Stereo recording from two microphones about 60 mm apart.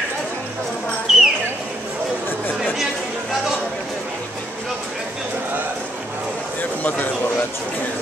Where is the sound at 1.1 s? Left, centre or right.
Centre.